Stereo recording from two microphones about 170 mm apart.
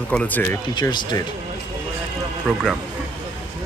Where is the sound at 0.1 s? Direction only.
10° left (ahead or behind).